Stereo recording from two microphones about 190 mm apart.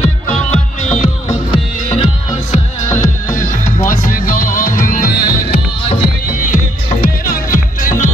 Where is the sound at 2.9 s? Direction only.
45° left (ahead or behind).